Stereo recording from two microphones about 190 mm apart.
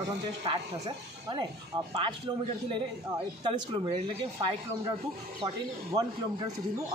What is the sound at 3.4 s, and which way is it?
Speech, 25° right (ahead or behind).